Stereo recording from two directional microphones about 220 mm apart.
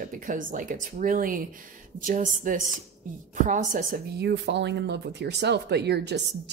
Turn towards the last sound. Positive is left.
turn(degrees=-50)  # may be behind; listen again after turning